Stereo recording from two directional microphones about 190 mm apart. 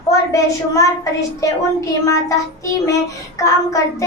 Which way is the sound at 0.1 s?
15° left (ahead or behind).